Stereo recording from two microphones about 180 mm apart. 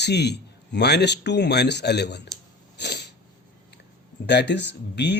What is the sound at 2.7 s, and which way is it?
Sneeze, 70° left (ahead or behind).